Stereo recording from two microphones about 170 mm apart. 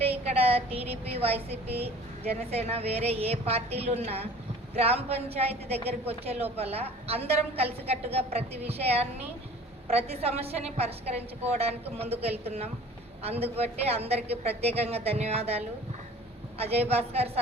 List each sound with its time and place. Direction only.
0.0 s a woman's voice: 35° right (ahead or behind)